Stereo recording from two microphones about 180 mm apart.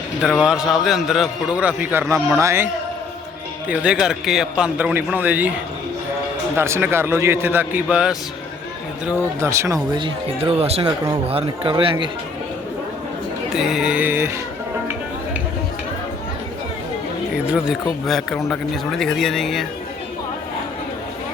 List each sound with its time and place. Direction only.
0.2 s a man's voice: 5° left (ahead or behind)
0.4 s a man's voice: 5° right (ahead or behind)
3.7 s speech: 5° right (ahead or behind)
6.6 s a man's voice: 15° right (ahead or behind)
13.5 s speech: centre (ahead or behind)
17.3 s speech: 5° right (ahead or behind)